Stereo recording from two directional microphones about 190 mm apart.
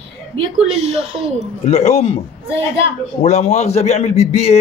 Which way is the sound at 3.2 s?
35° left (ahead or behind).